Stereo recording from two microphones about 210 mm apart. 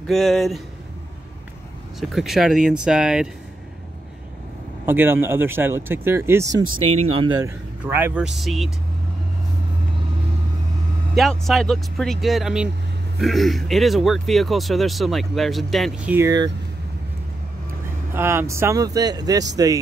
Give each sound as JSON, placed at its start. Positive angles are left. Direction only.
{"t": 0.0, "sound": "speech", "side_deg": 0}
{"t": 2.0, "sound": "speech", "side_deg": 0}
{"t": 4.8, "sound": "speech", "side_deg": -10}
{"t": 11.1, "sound": "speech", "side_deg": 0}
{"t": 18.1, "sound": "speech", "side_deg": -10}